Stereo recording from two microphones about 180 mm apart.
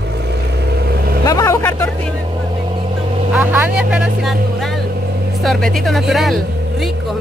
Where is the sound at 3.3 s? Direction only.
10° right (ahead or behind).